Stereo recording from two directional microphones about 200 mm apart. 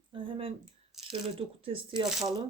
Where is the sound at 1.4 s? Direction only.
25° right (ahead or behind).